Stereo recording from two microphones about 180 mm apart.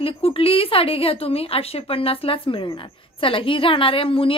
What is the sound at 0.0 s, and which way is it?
Speech, 30° left (ahead or behind).